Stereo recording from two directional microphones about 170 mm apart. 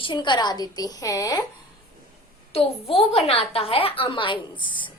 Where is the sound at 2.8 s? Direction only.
35° left (ahead or behind).